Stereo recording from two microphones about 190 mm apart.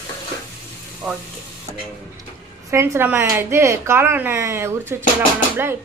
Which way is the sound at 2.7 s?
15° right (ahead or behind).